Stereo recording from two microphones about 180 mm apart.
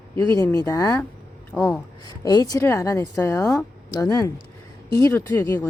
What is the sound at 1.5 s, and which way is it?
Speech, 5° left (ahead or behind).